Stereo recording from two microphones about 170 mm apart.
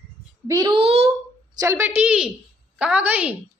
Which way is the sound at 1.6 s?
15° right (ahead or behind).